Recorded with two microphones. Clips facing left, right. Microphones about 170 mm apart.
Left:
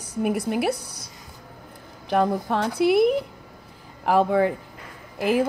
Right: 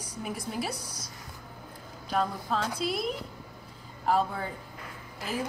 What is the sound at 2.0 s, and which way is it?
A woman's voice, 65° left (ahead or behind).